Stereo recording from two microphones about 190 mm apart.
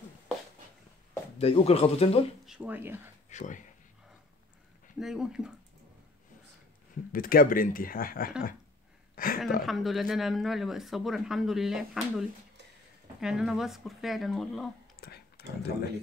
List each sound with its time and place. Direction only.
1.4 s speech: 30° left (ahead or behind)
2.4 s speech: 5° right (ahead or behind)
3.3 s speech: 40° left (ahead or behind)
4.9 s speech: 5° right (ahead or behind)
7.1 s speech: 50° left (ahead or behind)
9.1 s a sound: 50° left (ahead or behind)
9.7 s speech: centre (ahead or behind)
15.0 s a sound: 60° left (ahead or behind)